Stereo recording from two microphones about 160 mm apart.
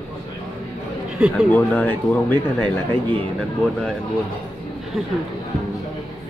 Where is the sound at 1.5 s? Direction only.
10° left (ahead or behind).